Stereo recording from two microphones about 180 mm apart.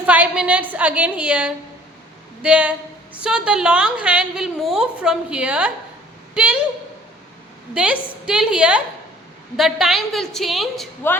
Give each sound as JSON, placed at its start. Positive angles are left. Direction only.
{"t": 0.0, "sound": "a woman's voice", "side_deg": -5}
{"t": 7.7, "sound": "a woman's voice", "side_deg": -5}
{"t": 11.0, "sound": "a woman's voice", "side_deg": 10}